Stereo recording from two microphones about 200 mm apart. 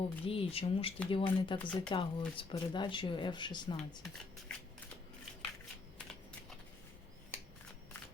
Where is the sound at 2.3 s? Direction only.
25° left (ahead or behind).